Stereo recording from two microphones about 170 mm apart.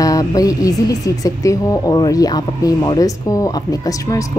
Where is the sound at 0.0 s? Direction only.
20° left (ahead or behind).